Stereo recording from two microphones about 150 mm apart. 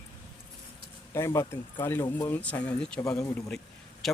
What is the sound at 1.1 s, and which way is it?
Speech, 20° left (ahead or behind).